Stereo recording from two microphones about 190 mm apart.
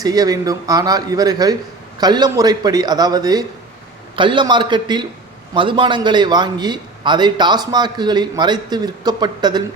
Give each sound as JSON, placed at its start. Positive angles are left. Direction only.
{"t": 0.0, "sound": "a man's voice", "side_deg": -20}